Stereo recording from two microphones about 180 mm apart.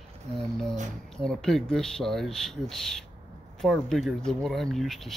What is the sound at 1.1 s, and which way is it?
Speech, 5° left (ahead or behind).